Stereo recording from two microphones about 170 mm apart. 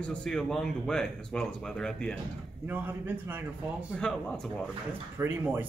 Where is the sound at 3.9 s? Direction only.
Centre (ahead or behind).